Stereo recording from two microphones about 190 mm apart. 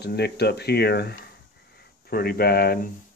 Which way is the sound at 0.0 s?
60° left (ahead or behind).